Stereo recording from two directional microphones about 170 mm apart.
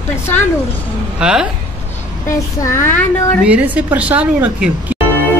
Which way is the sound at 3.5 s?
10° right (ahead or behind).